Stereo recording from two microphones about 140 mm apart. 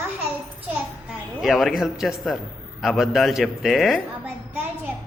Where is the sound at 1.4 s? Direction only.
Centre (ahead or behind).